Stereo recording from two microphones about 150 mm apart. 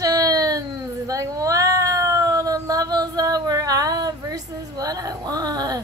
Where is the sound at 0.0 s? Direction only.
25° right (ahead or behind).